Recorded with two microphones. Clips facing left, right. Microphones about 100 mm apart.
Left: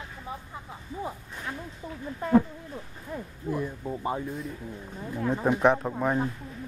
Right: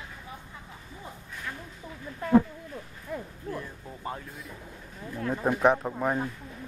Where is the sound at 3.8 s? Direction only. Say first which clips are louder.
Left 7 dB; 20° left (ahead or behind).